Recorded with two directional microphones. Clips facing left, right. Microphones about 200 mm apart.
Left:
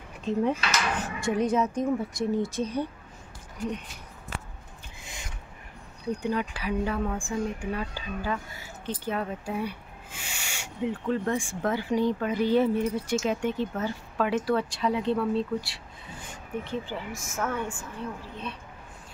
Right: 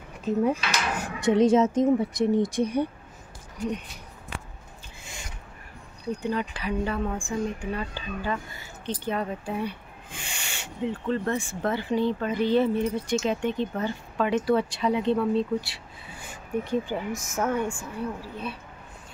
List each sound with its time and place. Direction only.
0.2 s speech: 5° right (ahead or behind)
1.3 s a woman's voice: 25° right (ahead or behind)
6.1 s speech: 10° left (ahead or behind); by 18.6 s 10° right (ahead or behind)